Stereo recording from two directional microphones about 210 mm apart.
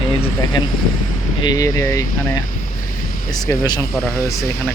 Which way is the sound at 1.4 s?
15° left (ahead or behind).